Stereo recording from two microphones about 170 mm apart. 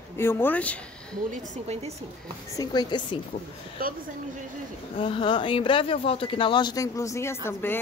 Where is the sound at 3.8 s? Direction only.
60° right (ahead or behind).